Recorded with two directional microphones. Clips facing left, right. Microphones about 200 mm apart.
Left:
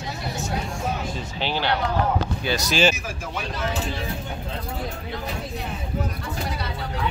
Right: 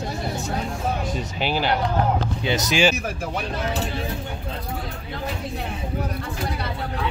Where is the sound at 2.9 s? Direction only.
60° right (ahead or behind).